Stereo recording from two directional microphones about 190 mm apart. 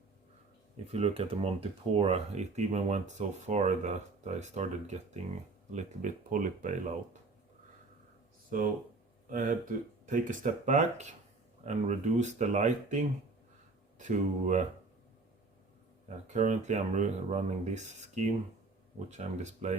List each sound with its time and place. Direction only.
0.9 s speech: 35° right (ahead or behind)
8.4 s speech: 45° right (ahead or behind)
16.0 s speech: 40° right (ahead or behind)